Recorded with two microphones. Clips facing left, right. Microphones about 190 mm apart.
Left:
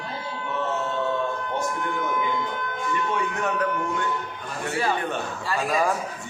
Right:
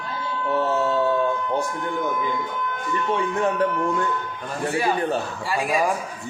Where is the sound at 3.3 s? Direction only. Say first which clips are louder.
Right 5 dB; 30° right (ahead or behind).